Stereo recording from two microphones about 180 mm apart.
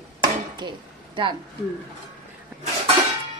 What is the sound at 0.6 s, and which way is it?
Speech, 25° right (ahead or behind).